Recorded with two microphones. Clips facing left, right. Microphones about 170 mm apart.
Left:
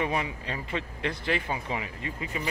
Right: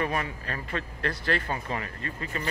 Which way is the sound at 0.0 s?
15° left (ahead or behind).